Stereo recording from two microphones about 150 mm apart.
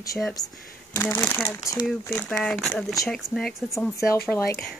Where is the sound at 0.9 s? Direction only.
15° left (ahead or behind).